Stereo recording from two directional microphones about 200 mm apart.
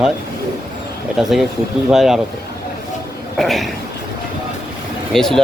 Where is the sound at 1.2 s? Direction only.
Centre (ahead or behind).